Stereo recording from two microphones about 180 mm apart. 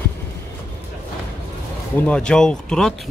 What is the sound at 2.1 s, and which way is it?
Speech, 5° left (ahead or behind).